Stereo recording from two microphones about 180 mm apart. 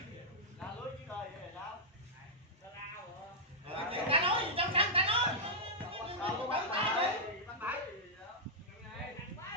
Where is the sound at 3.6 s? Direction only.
30° right (ahead or behind).